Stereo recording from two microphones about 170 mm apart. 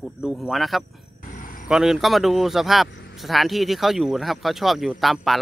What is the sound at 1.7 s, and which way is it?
Speech, centre (ahead or behind).